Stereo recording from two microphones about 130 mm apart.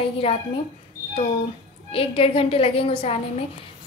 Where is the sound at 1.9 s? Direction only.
45° left (ahead or behind).